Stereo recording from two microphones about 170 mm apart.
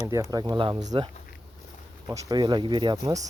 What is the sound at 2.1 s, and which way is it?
Speech, 20° right (ahead or behind).